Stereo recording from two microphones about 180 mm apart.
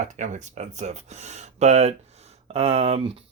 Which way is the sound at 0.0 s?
40° right (ahead or behind).